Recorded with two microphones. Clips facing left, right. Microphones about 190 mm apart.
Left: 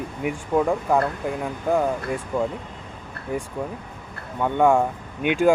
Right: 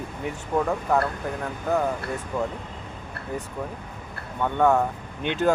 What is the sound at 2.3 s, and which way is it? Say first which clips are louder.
Speech: left 3 dB; 25° left (ahead or behind).